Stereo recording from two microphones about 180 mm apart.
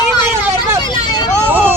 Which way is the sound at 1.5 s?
10° right (ahead or behind).